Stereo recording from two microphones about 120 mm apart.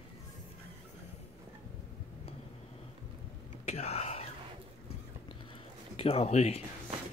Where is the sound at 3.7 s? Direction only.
60° left (ahead or behind).